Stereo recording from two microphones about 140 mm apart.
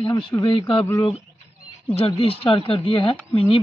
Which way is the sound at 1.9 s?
40° left (ahead or behind).